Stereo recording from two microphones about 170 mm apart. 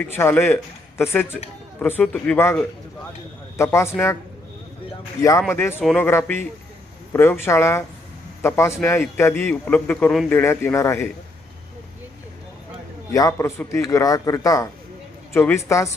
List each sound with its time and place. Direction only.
0.0 s a man's voice: 15° left (ahead or behind)
5.5 s a man's voice: 10° left (ahead or behind)
6.1 s a man's voice: 15° left (ahead or behind)
13.1 s a man's voice: 20° left (ahead or behind)